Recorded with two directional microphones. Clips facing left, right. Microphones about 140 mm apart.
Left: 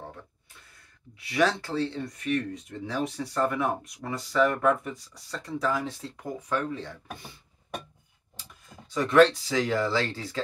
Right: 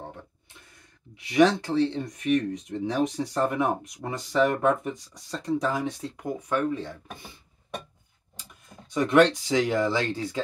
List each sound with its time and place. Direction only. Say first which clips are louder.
0.7 s speech: right 1 dB; 20° right (ahead or behind)
8.9 s speech: even; 15° right (ahead or behind)